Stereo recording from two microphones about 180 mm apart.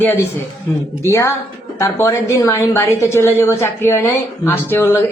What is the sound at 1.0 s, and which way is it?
Speech, 15° left (ahead or behind).